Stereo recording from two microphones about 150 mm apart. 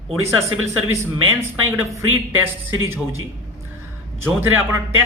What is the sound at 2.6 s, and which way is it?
Speech, 15° right (ahead or behind).